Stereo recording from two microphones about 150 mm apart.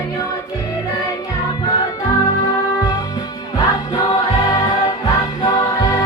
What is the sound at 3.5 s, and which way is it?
Music, 25° left (ahead or behind).